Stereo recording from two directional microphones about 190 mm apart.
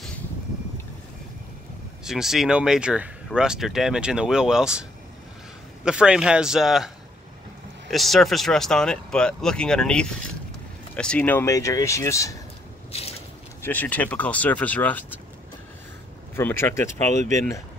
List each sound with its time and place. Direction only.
2.0 s speech: centre (ahead or behind)
5.9 s speech: 5° right (ahead or behind)
7.9 s speech: centre (ahead or behind)
13.6 s speech: 10° left (ahead or behind)
16.3 s speech: 10° left (ahead or behind)
17.1 s speech: 40° right (ahead or behind)